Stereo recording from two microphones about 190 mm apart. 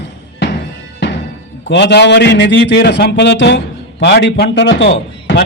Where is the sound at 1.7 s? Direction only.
65° left (ahead or behind).